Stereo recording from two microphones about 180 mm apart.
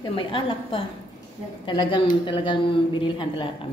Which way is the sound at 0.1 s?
30° left (ahead or behind).